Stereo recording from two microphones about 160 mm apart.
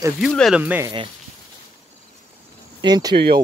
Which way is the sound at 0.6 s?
10° right (ahead or behind).